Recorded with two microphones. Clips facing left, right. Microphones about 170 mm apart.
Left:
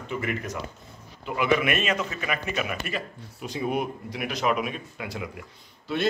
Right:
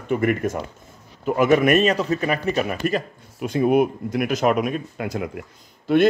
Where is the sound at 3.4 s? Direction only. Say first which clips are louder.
Right 10 dB; 55° right (ahead or behind).